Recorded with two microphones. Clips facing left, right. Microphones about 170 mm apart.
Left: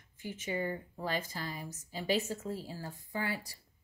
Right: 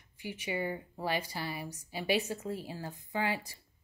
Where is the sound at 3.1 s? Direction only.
90° right.